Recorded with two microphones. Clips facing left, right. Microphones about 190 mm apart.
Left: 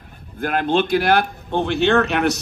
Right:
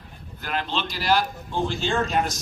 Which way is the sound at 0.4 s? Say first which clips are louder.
Left 10 dB; 50° left (ahead or behind).